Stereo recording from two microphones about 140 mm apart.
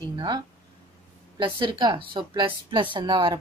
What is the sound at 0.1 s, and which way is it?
Speech, 35° right (ahead or behind).